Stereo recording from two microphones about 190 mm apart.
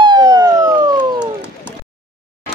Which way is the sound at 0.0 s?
25° right (ahead or behind).